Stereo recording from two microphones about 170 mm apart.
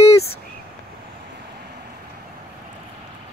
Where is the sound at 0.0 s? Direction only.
40° left (ahead or behind).